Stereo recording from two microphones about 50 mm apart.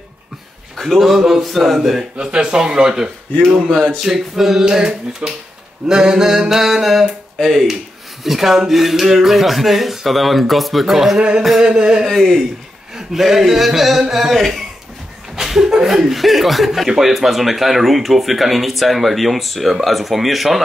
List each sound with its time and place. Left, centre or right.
0.7 s speech: centre
2.1 s speech: centre
3.6 s speech: centre
4.0 s speech: centre
11.1 s a sound: right
11.6 s speech: centre
12.1 s speech: centre